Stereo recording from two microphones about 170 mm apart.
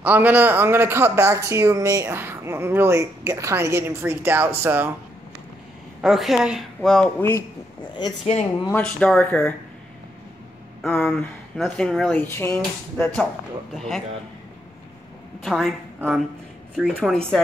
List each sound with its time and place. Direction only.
0.0 s speech: 10° right (ahead or behind)
5.9 s speech: centre (ahead or behind)
7.9 s a woman's voice: 25° left (ahead or behind)
8.7 s speech: 5° left (ahead or behind)
10.8 s speech: centre (ahead or behind)
15.4 s speech: centre (ahead or behind)
16.7 s speech: centre (ahead or behind)